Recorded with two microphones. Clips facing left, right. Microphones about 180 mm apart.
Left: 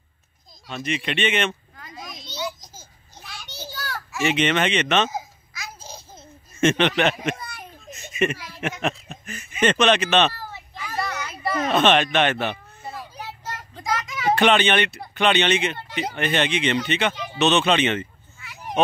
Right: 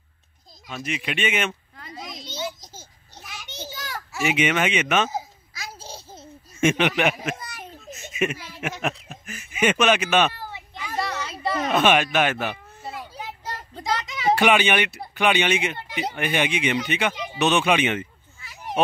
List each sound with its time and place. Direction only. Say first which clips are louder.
0.7 s speech: left 2 dB; 5° right (ahead or behind)
1.8 s a sound: right 2 dB; 25° right (ahead or behind)
4.2 s speech: left 1 dB; 5° right (ahead or behind)
6.6 s a child's voice: left 1 dB; 10° right (ahead or behind)
7.8 s a sound: left 2 dB; 5° right (ahead or behind); by 11.3 s 25° right (ahead or behind)
11.5 s speech: left 1 dB; 5° right (ahead or behind)
12.8 s children playing: right 1 dB; 25° right (ahead or behind)
13.5 s a sound: even; 25° right (ahead or behind)
14.3 s speech: left 1 dB; 10° right (ahead or behind)